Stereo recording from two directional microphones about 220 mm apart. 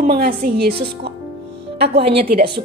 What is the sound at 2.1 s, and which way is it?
Speech, 45° right (ahead or behind).